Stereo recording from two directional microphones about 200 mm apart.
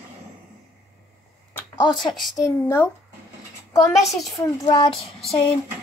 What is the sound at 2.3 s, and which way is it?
Speech, 15° left (ahead or behind).